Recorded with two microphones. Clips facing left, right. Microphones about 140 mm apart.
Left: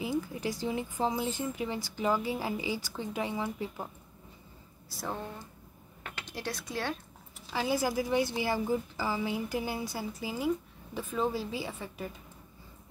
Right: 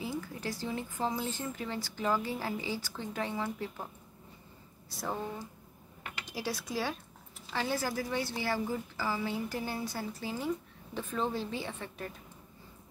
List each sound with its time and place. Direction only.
0.0 s speech: 15° left (ahead or behind)
4.8 s speech: centre (ahead or behind)
6.2 s speech: 5° right (ahead or behind)
7.5 s speech: 10° left (ahead or behind)